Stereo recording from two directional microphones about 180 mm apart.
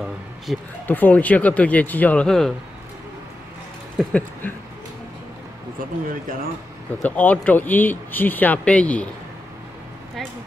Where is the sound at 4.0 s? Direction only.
10° left (ahead or behind).